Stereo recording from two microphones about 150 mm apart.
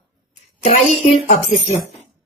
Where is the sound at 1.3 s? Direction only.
55° left (ahead or behind).